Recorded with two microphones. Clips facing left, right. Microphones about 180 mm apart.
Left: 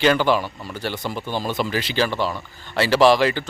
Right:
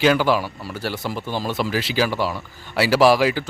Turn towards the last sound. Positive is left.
turn(degrees=-5)  # may be behind; listen again after turning